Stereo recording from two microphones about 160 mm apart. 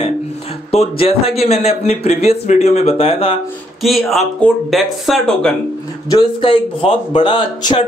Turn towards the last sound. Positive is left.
turn(degrees=30)  # may be behind; listen again after turning